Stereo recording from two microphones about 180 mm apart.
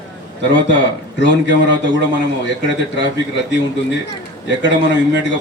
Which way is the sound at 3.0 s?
80° left.